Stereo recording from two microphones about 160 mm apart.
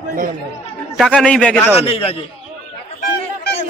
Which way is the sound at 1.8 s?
40° left (ahead or behind).